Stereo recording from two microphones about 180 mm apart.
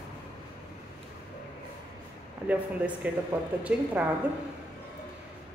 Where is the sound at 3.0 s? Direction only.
10° right (ahead or behind).